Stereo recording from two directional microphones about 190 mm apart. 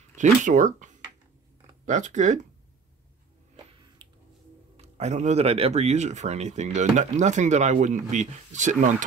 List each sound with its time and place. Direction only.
0.1 s speech: 40° right (ahead or behind)
4.7 s speech: 35° right (ahead or behind)